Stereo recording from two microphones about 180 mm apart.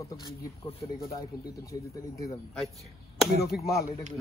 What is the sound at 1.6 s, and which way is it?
Speech, 20° left (ahead or behind).